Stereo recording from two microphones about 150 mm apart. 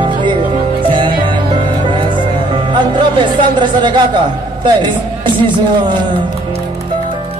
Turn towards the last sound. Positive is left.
turn(degrees=-30)  # may be behind; listen again after turning